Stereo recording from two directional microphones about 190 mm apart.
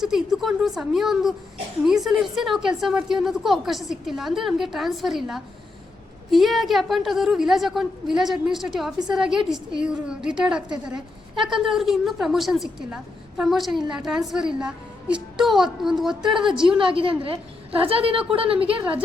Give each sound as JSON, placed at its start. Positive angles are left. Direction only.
{"t": 0.0, "sound": "a woman's voice", "side_deg": 0}
{"t": 16.6, "sound": "a woman's voice", "side_deg": -25}
{"t": 18.8, "sound": "a woman's voice", "side_deg": -5}